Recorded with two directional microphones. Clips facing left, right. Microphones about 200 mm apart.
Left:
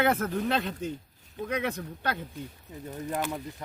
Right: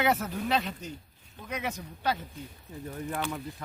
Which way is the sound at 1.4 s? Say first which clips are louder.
Left 5 dB; 60° left (ahead or behind).